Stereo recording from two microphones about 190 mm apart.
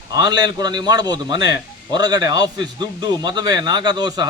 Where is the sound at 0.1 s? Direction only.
20° right (ahead or behind).